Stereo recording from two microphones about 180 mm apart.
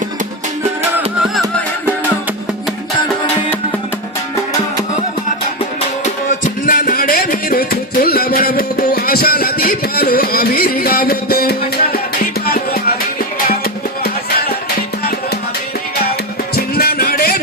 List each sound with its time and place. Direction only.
6.4 s music: 50° left (ahead or behind)
16.6 s music: 60° left (ahead or behind)